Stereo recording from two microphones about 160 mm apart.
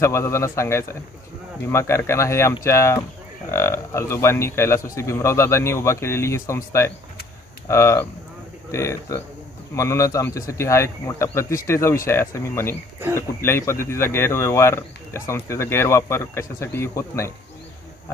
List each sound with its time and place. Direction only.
0.0 s speech: 15° left (ahead or behind)